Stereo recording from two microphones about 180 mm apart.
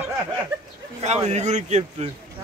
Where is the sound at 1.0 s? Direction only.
40° right (ahead or behind).